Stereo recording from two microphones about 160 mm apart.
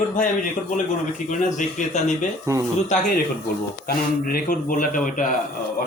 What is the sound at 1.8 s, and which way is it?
Speech, 50° left (ahead or behind).